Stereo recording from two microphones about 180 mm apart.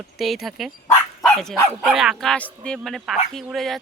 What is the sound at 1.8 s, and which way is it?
Speech, 5° right (ahead or behind).